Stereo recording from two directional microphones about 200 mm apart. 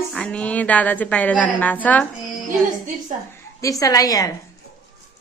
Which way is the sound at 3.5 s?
15° left (ahead or behind).